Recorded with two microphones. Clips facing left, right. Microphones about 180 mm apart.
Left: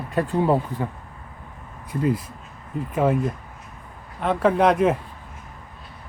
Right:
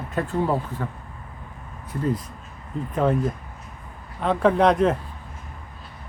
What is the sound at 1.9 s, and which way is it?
Speech, 10° left (ahead or behind).